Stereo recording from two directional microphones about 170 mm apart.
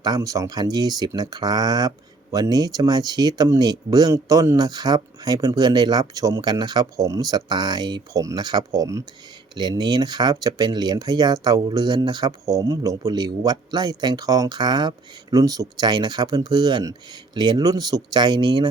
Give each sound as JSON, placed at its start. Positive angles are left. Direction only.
{"t": 0.0, "sound": "speech", "side_deg": -20}